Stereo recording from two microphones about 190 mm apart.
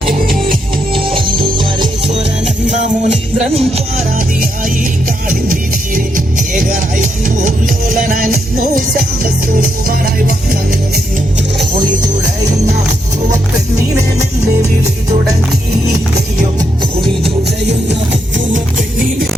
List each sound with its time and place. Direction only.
0.1 s music: 50° right (ahead or behind)
0.9 s music: 25° right (ahead or behind)
2.6 s music: 40° right (ahead or behind)
5.3 s music: 45° right (ahead or behind)
17.8 s music: 70° right (ahead or behind)